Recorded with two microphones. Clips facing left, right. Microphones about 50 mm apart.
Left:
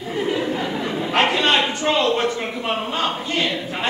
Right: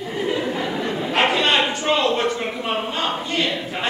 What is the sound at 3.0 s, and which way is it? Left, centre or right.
Choir, centre.